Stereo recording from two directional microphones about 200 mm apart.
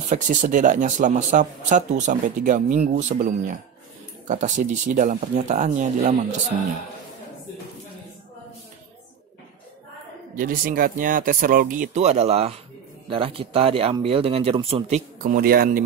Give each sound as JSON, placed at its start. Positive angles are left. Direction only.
{"t": 0.1, "sound": "speech", "side_deg": -40}
{"t": 10.3, "sound": "speech", "side_deg": -45}